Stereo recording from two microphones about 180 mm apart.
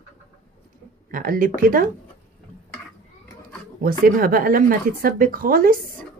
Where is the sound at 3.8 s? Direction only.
55° right (ahead or behind).